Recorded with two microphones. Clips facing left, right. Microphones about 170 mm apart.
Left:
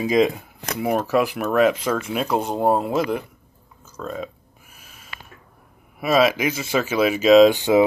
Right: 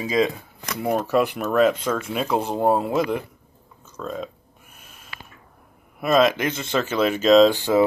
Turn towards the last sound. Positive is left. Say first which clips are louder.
# left 2 dB
turn(degrees=15)  # may be behind; listen again after turning